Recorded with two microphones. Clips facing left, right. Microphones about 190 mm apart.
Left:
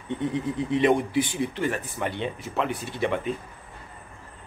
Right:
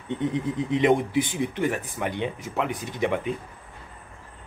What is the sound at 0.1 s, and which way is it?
Speech, 20° right (ahead or behind).